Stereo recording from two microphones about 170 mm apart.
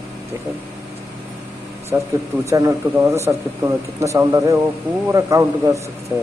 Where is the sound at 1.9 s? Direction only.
15° right (ahead or behind).